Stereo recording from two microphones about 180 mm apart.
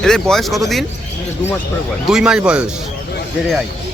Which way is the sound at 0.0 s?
5° left (ahead or behind).